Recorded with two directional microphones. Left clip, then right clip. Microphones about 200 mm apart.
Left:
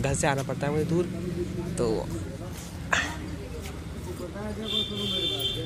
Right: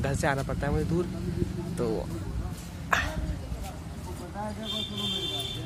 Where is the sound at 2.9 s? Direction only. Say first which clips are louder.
Left 1 dB; 15° right (ahead or behind).